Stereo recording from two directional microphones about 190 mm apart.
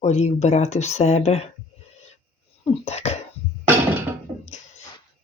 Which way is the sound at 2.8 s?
35° left (ahead or behind).